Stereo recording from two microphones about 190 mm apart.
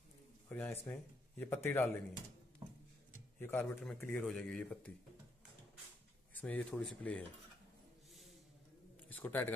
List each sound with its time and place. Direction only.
0.5 s speech: 10° left (ahead or behind)
2.6 s music: 25° right (ahead or behind)
3.3 s speech: 10° left (ahead or behind)
6.3 s speech: 10° left (ahead or behind)
9.1 s a man's voice: 10° left (ahead or behind)